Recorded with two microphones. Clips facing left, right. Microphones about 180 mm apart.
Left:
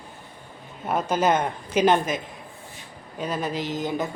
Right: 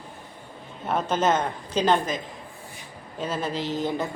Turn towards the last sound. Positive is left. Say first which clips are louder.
# even
turn(degrees=15)  # may be behind; listen again after turning